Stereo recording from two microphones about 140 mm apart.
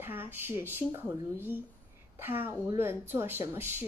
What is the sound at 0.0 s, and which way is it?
A woman's voice, 15° right (ahead or behind).